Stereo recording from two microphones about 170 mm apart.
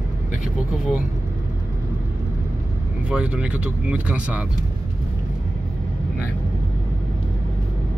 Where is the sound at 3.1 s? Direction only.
5° right (ahead or behind).